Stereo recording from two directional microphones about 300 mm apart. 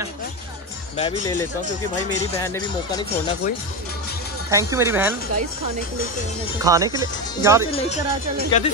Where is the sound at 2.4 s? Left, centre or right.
Centre.